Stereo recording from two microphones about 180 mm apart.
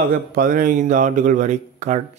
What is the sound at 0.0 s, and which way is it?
A man's voice, 55° right (ahead or behind).